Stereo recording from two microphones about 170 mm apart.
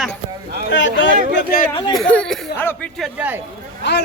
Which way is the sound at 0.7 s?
90° left.